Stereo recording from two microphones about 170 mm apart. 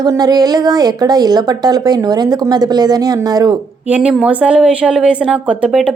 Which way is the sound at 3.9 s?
5° right (ahead or behind).